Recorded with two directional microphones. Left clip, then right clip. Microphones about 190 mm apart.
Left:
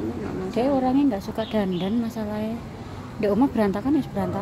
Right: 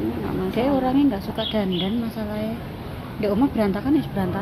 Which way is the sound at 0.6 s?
45° left (ahead or behind).